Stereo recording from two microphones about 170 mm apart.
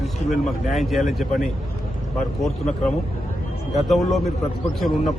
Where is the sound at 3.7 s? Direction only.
Centre (ahead or behind).